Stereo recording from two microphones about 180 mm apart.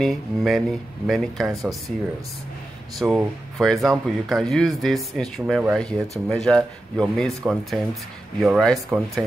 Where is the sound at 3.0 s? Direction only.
Centre (ahead or behind).